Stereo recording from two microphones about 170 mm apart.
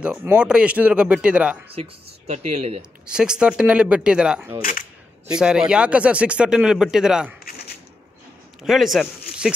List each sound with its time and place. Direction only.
0.0 s speech: 10° right (ahead or behind)
1.7 s speech: 40° right (ahead or behind)
3.1 s speech: 5° right (ahead or behind)
8.6 s speech: centre (ahead or behind)